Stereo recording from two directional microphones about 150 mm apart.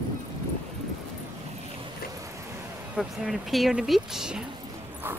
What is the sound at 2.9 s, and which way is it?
Speech, 5° right (ahead or behind).